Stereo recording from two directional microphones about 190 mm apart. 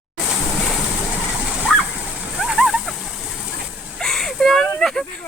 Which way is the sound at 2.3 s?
Centre (ahead or behind).